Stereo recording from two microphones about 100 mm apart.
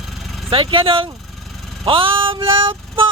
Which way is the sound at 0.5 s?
60° right (ahead or behind).